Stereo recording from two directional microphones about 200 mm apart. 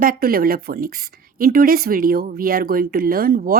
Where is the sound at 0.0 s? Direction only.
45° right (ahead or behind).